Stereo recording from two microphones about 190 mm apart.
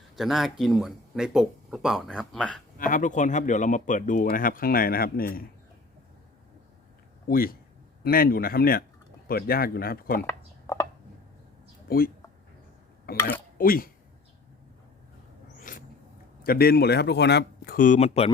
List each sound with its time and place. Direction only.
0.2 s speech: centre (ahead or behind)
2.7 s speech: 45° left (ahead or behind)
7.3 s speech: 50° left (ahead or behind)
10.2 s a sound: 15° left (ahead or behind)
11.9 s speech: 50° left (ahead or behind)
15.7 s a sound: 45° left (ahead or behind)
16.4 s speech: 55° left (ahead or behind); by 18.3 s 35° left (ahead or behind)